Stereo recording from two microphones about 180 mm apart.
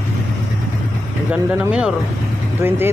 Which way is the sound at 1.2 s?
5° right (ahead or behind).